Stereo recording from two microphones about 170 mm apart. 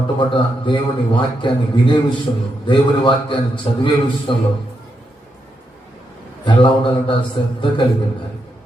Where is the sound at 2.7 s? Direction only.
30° left (ahead or behind).